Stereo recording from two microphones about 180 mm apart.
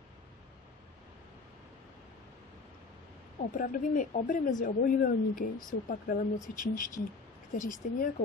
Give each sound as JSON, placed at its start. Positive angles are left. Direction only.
{"t": 3.5, "sound": "speech", "side_deg": 45}